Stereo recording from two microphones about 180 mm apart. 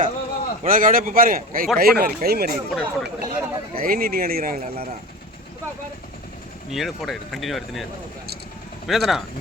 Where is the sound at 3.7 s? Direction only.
55° right (ahead or behind).